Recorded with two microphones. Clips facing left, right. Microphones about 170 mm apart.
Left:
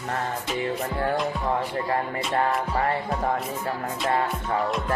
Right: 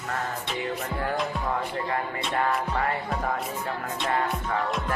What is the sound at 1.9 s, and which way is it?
Music, 30° left (ahead or behind).